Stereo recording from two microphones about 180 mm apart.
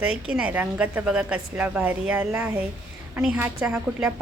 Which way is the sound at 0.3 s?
5° right (ahead or behind).